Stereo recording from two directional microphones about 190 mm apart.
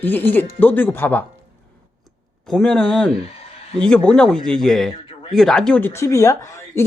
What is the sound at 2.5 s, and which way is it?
Speech, centre (ahead or behind).